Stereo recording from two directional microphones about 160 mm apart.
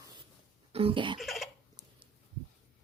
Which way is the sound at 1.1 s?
Centre (ahead or behind).